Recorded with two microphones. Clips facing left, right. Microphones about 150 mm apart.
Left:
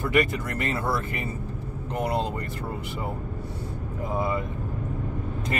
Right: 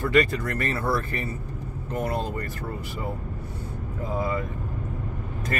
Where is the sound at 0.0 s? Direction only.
15° left (ahead or behind).